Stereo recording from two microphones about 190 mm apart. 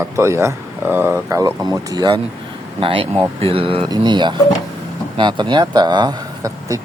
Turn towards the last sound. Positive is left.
turn(degrees=-20)  # may be behind; listen again after turning